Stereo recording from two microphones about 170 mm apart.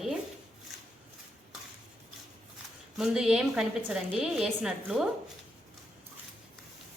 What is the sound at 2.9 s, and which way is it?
Speech, centre (ahead or behind).